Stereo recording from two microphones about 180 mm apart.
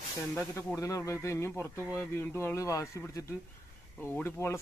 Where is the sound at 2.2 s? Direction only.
15° left (ahead or behind).